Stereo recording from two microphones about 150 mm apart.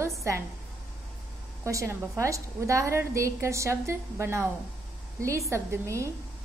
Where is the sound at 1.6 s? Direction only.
20° right (ahead or behind).